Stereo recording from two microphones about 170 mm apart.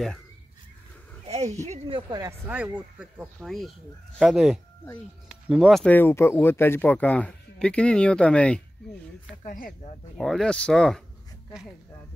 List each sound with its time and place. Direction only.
1.2 s a sound: 40° right (ahead or behind)
1.7 s speech: 30° right (ahead or behind)
2.5 s speech: 10° right (ahead or behind)
9.5 s speech: 55° left (ahead or behind)
10.1 s speech: centre (ahead or behind)